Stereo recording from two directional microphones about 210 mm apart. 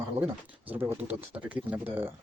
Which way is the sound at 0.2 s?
10° right (ahead or behind).